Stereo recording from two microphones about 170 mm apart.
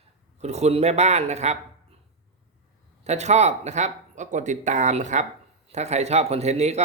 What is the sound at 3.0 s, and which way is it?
Speech, 40° right (ahead or behind).